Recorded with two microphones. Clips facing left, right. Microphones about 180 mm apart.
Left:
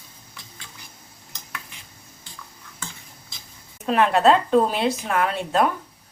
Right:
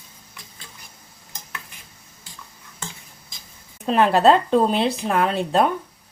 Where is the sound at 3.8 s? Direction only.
30° right (ahead or behind).